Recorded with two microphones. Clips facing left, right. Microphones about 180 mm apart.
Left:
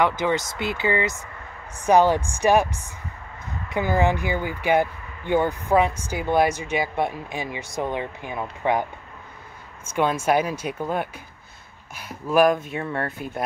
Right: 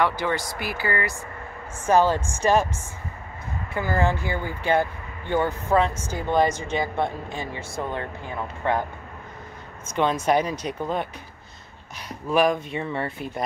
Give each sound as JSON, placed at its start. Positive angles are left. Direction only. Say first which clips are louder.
{"t": 0.0, "sound": "speech", "louder": "left 2 dB", "side_deg": 20}
{"t": 9.9, "sound": "speech", "louder": "even", "side_deg": 5}